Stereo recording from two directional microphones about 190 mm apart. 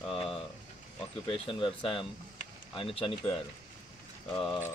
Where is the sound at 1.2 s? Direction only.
25° left (ahead or behind).